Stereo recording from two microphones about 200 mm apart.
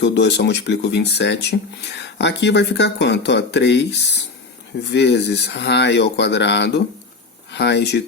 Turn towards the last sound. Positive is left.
turn(degrees=60)  # may be behind; listen again after turning